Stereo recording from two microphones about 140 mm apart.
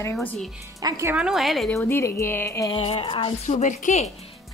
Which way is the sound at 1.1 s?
5° right (ahead or behind).